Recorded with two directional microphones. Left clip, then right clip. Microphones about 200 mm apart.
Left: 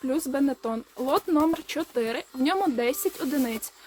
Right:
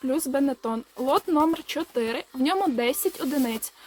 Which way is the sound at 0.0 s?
10° right (ahead or behind).